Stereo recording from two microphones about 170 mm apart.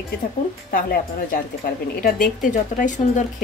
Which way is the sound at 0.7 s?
60° left (ahead or behind).